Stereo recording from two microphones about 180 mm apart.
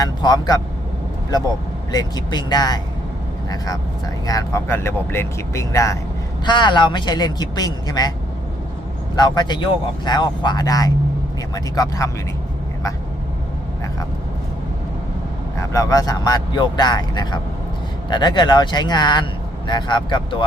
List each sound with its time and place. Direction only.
0.0 s speech: 20° left (ahead or behind)
1.9 s speech: 20° left (ahead or behind)
4.3 s speech: 20° left (ahead or behind)
9.1 s speech: 25° left (ahead or behind)
15.5 s speech: 15° left (ahead or behind)